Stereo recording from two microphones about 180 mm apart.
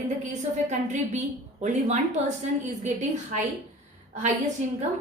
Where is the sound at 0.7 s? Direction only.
40° right (ahead or behind).